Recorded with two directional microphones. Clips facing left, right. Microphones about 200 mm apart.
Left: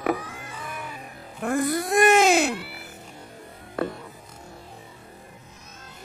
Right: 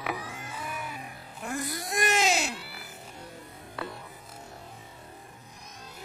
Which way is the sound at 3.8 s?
45° left (ahead or behind).